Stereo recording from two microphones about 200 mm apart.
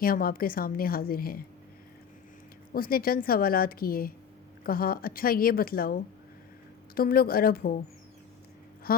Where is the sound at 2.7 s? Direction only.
45° left (ahead or behind).